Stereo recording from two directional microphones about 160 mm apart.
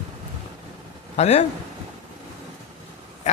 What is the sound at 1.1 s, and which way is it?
Speech, 40° left (ahead or behind).